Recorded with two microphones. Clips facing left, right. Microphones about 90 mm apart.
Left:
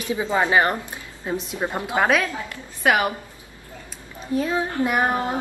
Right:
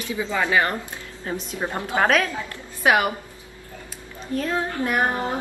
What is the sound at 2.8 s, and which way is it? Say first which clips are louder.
Speech: right 1 dB; 5° right (ahead or behind).